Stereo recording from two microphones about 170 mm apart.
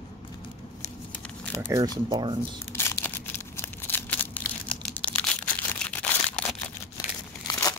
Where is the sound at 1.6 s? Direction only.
15° right (ahead or behind).